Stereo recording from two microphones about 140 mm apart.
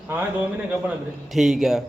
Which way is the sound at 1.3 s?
Centre (ahead or behind).